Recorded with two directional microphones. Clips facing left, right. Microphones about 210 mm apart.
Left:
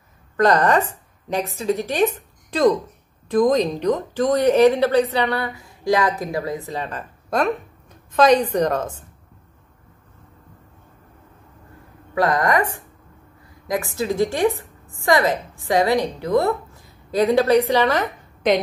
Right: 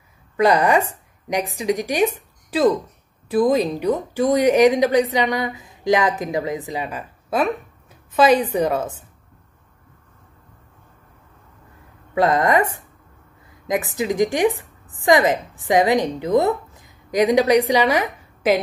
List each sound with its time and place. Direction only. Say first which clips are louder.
0.4 s speech: even; 10° right (ahead or behind)
12.2 s a woman's voice: right 2 dB; 25° right (ahead or behind); by 18.6 s 5° right (ahead or behind)